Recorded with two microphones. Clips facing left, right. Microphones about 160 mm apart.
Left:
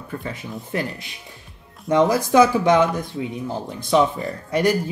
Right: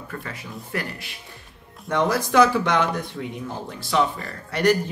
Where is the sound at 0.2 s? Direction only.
20° left (ahead or behind).